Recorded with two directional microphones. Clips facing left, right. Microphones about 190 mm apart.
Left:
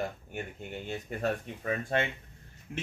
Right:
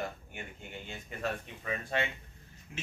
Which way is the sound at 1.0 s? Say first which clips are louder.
Left 4 dB; 40° left (ahead or behind).